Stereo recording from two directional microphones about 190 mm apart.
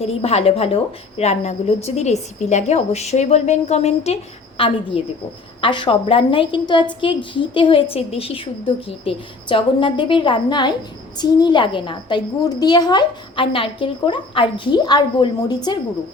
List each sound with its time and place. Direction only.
0.0 s a woman's voice: 30° left (ahead or behind)